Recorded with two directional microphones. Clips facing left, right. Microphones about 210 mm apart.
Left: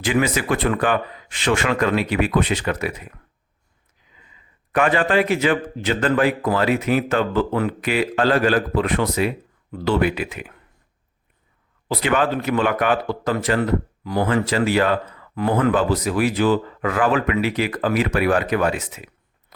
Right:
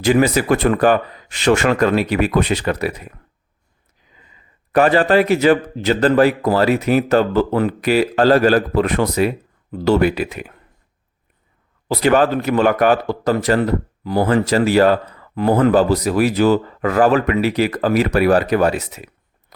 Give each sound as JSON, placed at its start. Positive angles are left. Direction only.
{"t": 0.0, "sound": "speech", "side_deg": -40}
{"t": 4.7, "sound": "speech", "side_deg": -35}
{"t": 11.9, "sound": "speech", "side_deg": -40}